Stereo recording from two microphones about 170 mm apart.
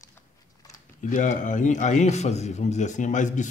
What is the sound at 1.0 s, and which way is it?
A man's voice, 50° left (ahead or behind).